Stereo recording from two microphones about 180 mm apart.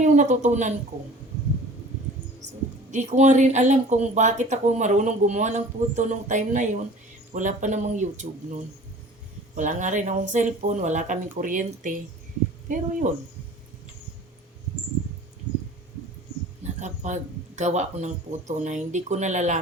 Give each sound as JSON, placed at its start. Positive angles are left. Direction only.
{"t": 0.0, "sound": "speech", "side_deg": -40}
{"t": 2.9, "sound": "speech", "side_deg": -40}
{"t": 16.8, "sound": "speech", "side_deg": -40}